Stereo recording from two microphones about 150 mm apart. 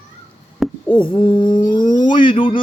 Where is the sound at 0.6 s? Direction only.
Centre (ahead or behind).